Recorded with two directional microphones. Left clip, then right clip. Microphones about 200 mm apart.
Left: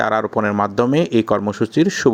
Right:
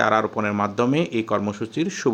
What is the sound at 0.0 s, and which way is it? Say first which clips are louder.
Speech: left 2 dB; 30° left (ahead or behind).